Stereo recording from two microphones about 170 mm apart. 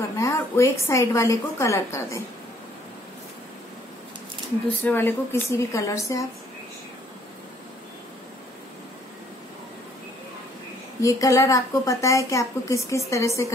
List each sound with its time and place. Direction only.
0.2 s a woman's voice: 15° left (ahead or behind)
4.8 s a woman's voice: 10° left (ahead or behind)
11.0 s a woman's voice: 20° left (ahead or behind)